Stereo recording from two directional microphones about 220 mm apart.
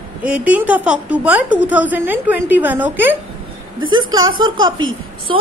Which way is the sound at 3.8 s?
65° right (ahead or behind).